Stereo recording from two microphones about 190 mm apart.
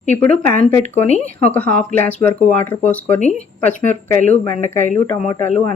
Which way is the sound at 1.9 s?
10° left (ahead or behind).